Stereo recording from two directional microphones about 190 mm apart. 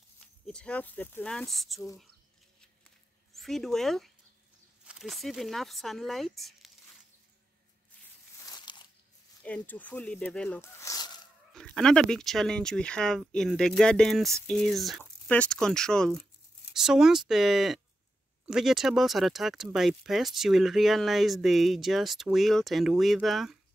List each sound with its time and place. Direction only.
0.5 s speech: 5° left (ahead or behind)
3.3 s speech: centre (ahead or behind)
8.5 s crunch: 20° left (ahead or behind)
9.4 s speech: 5° left (ahead or behind)
11.5 s speech: 5° left (ahead or behind)